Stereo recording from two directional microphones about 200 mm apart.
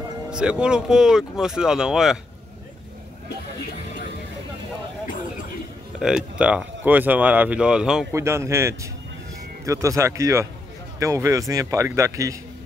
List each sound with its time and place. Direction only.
0.3 s speech: 5° right (ahead or behind)
5.9 s a man's voice: 5° right (ahead or behind)